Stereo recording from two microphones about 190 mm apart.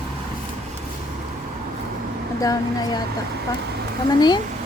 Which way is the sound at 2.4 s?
20° left (ahead or behind).